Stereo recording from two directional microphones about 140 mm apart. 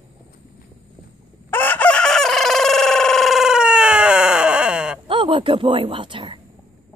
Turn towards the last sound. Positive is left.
turn(degrees=-35)  # may be behind; listen again after turning